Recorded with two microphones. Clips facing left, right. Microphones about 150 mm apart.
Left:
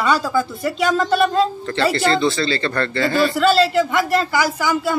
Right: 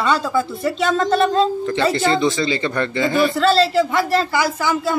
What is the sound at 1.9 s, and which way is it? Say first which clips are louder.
A woman's voice: even; 20° right (ahead or behind).